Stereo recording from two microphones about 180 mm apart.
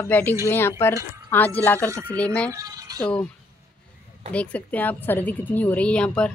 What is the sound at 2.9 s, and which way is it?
Speech, 5° left (ahead or behind).